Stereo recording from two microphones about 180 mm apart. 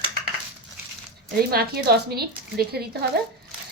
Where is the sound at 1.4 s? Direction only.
60° right (ahead or behind).